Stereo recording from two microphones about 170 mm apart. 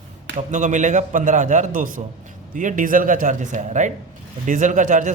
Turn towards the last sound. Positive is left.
turn(degrees=-50)  # may be behind; listen again after turning